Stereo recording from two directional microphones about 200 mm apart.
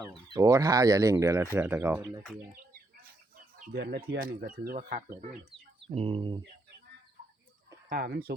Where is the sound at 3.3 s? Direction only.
50° right (ahead or behind).